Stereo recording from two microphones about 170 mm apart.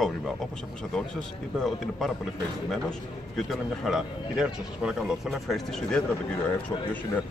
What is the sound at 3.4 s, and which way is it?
Speech, centre (ahead or behind).